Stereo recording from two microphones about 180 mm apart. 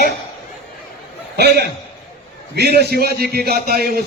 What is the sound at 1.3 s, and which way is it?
A man's voice, 65° right (ahead or behind).